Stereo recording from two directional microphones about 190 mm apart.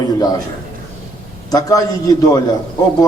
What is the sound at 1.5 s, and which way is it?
Speech, 20° left (ahead or behind).